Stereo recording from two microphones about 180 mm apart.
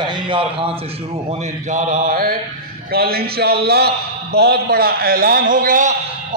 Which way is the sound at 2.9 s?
60° right (ahead or behind).